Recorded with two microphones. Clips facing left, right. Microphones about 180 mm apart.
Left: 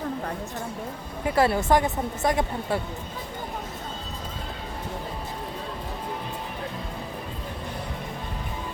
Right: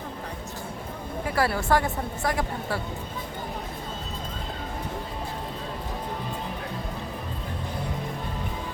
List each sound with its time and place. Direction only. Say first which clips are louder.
1.4 s a woman's voice: left 3 dB; 20° left (ahead or behind)